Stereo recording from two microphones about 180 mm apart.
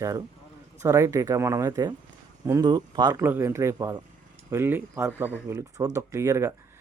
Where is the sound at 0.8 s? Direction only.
15° right (ahead or behind).